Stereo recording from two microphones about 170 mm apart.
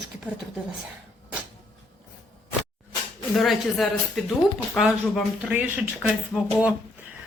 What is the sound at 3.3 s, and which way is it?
Speech, centre (ahead or behind).